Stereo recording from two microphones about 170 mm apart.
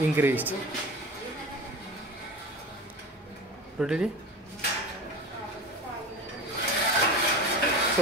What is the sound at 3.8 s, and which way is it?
Speech, centre (ahead or behind).